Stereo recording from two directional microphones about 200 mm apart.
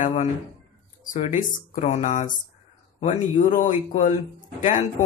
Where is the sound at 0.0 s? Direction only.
40° left (ahead or behind).